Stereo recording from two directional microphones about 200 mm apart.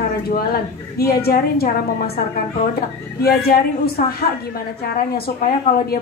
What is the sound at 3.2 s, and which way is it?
Speech, 50° left (ahead or behind).